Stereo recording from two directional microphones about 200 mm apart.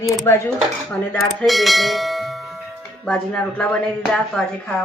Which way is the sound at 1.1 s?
5° left (ahead or behind).